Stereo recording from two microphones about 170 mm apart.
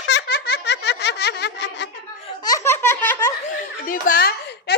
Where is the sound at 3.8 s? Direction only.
55° left (ahead or behind).